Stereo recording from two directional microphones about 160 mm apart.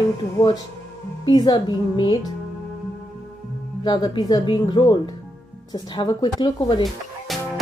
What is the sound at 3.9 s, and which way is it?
A woman's voice, 30° left (ahead or behind).